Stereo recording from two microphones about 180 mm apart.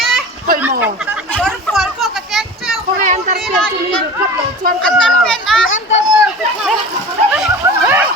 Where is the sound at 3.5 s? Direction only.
5° left (ahead or behind).